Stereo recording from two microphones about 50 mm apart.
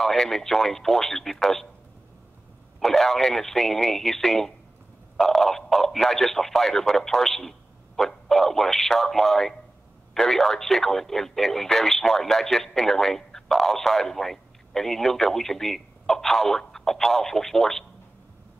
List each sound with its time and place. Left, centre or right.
0.0 s speech: centre
2.8 s speech: centre